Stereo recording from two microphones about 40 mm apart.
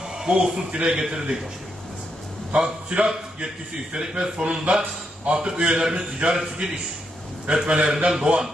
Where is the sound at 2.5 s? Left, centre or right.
Right.